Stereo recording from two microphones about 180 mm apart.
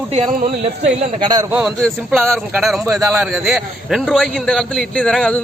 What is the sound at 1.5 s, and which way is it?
A man's voice, centre (ahead or behind).